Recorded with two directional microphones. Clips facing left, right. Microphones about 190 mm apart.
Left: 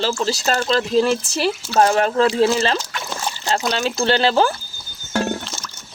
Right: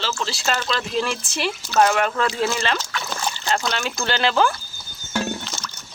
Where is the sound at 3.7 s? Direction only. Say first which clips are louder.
Left 6 dB; 30° left (ahead or behind).